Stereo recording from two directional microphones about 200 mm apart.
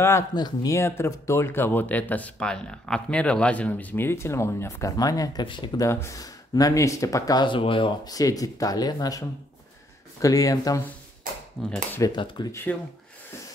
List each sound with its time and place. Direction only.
0.0 s speech: 15° left (ahead or behind)
10.2 s speech: 15° left (ahead or behind)
11.6 s speech: 5° left (ahead or behind)
12.0 s speech: 20° left (ahead or behind)